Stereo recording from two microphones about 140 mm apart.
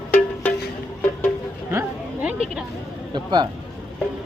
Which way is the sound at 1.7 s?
15° right (ahead or behind).